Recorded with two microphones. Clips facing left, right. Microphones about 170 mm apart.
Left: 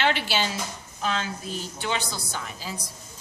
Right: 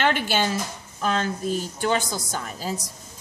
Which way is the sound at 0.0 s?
50° right (ahead or behind).